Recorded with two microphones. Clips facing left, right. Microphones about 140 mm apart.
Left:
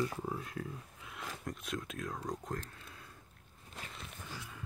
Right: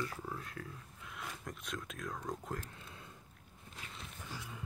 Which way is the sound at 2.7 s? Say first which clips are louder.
Right 1 dB; 20° right (ahead or behind).